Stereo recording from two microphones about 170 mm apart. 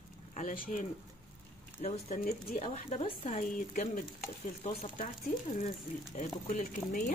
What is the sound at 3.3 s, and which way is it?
Speech, 50° left (ahead or behind).